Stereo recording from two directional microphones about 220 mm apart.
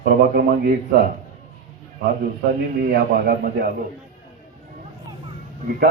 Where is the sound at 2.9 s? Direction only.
45° right (ahead or behind).